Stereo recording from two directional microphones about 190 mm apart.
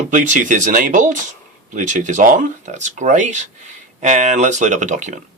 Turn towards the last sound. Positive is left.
turn(degrees=-40)  # may be behind; listen again after turning